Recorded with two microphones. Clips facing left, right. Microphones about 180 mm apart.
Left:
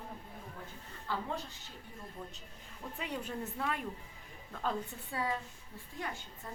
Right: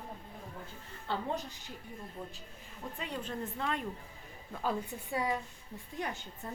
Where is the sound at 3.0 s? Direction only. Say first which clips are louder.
Even; 10° left (ahead or behind).